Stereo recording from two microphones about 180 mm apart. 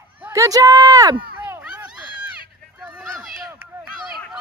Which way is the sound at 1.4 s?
10° right (ahead or behind).